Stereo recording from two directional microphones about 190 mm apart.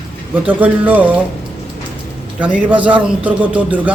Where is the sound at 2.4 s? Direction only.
5° right (ahead or behind).